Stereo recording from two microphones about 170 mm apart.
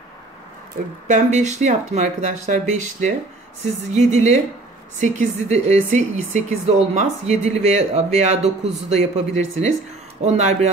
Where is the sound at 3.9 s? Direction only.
40° right (ahead or behind).